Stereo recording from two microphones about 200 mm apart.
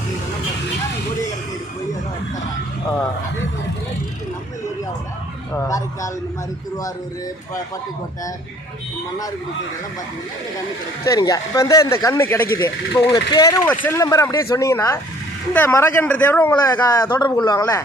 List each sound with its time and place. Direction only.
5.5 s a man's voice: 15° left (ahead or behind)
11.0 s a man's voice: 15° left (ahead or behind)